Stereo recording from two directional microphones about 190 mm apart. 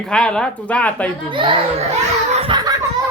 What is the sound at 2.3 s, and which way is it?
Laughter, 30° right (ahead or behind).